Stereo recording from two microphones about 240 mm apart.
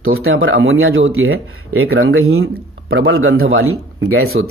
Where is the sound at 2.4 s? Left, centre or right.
Right.